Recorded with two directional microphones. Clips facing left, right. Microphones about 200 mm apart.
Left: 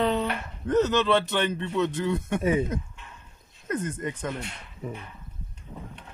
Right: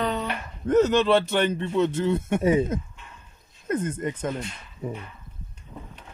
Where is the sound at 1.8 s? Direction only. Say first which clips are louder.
Right 3 dB; 25° right (ahead or behind).